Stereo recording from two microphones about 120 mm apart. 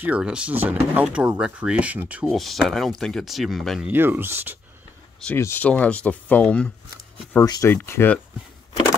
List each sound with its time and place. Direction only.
0.0 s speech: 10° right (ahead or behind)
2.2 s speech: centre (ahead or behind)
3.8 s speech: 20° right (ahead or behind)
5.4 s speech: 15° left (ahead or behind)
7.4 s speech: 35° left (ahead or behind)
7.7 s speech: 20° left (ahead or behind)